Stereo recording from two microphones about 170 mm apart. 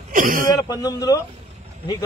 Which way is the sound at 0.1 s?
55° right (ahead or behind).